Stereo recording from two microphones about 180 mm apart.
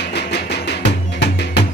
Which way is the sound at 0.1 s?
70° left (ahead or behind).